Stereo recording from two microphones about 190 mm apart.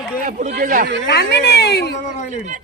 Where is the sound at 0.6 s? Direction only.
45° right (ahead or behind).